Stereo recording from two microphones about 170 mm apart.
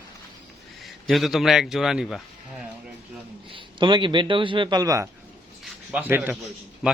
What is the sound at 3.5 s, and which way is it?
A man's voice, 30° right (ahead or behind).